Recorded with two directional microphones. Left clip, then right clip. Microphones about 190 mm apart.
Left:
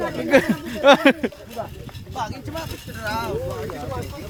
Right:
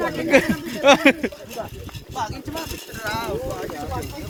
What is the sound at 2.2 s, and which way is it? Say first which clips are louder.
Speech: right 1 dB; 15° left (ahead or behind).